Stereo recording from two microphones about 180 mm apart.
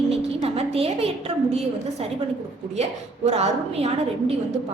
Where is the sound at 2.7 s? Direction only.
35° right (ahead or behind).